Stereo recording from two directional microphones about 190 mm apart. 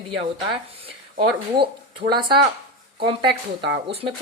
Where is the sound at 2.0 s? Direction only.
30° right (ahead or behind).